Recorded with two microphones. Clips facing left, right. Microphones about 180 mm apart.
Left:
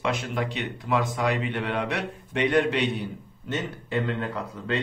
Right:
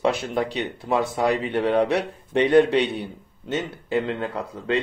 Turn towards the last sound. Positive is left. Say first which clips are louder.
# right 4 dB
turn(degrees=-30)  # may be behind; listen again after turning